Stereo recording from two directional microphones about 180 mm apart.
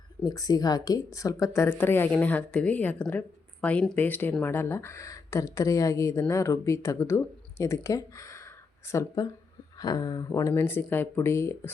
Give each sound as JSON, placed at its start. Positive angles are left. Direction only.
{"t": 0.3, "sound": "speech", "side_deg": 20}